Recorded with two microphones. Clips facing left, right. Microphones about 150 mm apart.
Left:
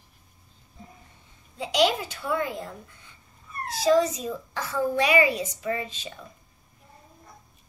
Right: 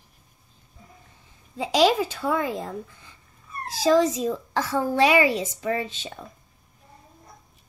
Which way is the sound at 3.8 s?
90° right.